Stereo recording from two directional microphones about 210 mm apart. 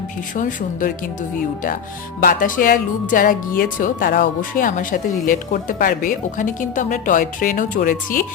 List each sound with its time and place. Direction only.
0.3 s a woman's voice: 40° left (ahead or behind)
2.2 s a woman's voice: 40° left (ahead or behind)